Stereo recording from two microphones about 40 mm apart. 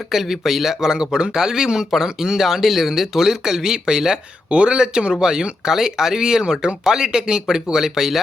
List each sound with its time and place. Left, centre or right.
0.1 s speech: centre
4.4 s speech: right; by 8.2 s centre